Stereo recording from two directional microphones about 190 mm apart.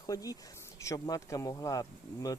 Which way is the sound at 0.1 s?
20° left (ahead or behind).